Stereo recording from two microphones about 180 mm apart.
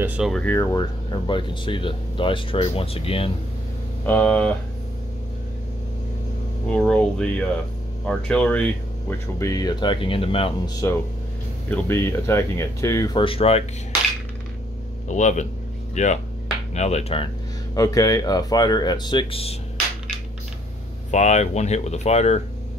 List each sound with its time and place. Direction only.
0.0 s speech: 5° right (ahead or behind)
0.5 s speech: 15° left (ahead or behind)
4.0 s speech: 10° left (ahead or behind)
6.8 s speech: 5° left (ahead or behind)
9.4 s speech: 20° left (ahead or behind)
10.8 s speech: 15° left (ahead or behind); by 13.7 s 35° left (ahead or behind)
15.0 s speech: 40° left (ahead or behind)
17.7 s speech: 20° left (ahead or behind)
21.1 s speech: 40° left (ahead or behind)